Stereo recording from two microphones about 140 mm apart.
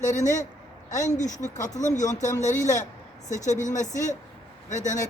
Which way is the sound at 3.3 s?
60° left (ahead or behind).